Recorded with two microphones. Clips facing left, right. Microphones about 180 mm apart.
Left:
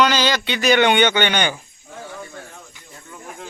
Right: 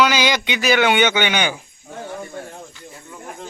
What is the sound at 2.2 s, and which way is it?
Snake, 30° right (ahead or behind).